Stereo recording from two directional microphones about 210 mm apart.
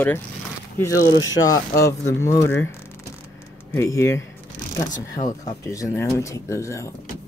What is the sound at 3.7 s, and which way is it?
Speech, 15° left (ahead or behind).